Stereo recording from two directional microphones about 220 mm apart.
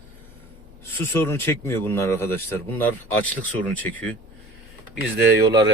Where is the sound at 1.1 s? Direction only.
10° left (ahead or behind).